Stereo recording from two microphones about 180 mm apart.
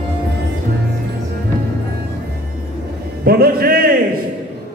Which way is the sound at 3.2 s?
55° right (ahead or behind).